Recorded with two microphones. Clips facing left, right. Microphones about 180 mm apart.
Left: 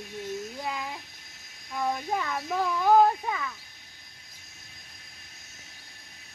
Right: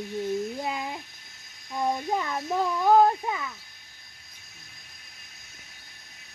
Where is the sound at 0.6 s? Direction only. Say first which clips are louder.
Right 3 dB; 25° right (ahead or behind).